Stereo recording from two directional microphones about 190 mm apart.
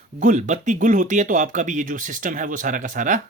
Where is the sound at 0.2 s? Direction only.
40° right (ahead or behind).